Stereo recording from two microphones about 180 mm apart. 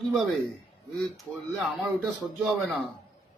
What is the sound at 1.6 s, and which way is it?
Speech, centre (ahead or behind).